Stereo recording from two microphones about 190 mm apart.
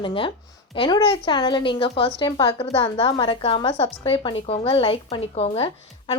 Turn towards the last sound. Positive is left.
turn(degrees=30)  # may be behind; listen again after turning